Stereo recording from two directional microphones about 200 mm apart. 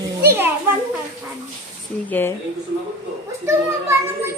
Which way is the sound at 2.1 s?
10° left (ahead or behind).